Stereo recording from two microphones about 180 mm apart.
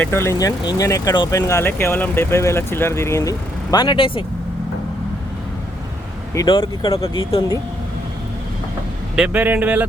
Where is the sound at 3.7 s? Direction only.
25° left (ahead or behind).